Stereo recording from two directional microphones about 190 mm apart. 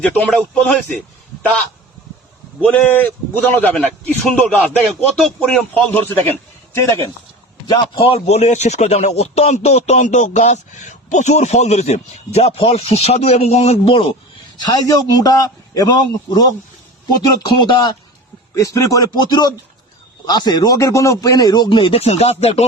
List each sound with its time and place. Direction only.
0.0 s a man's voice: 5° left (ahead or behind)
2.6 s a man's voice: 5° left (ahead or behind)
7.7 s a man's voice: 30° left (ahead or behind)
17.7 s a man's voice: 25° left (ahead or behind)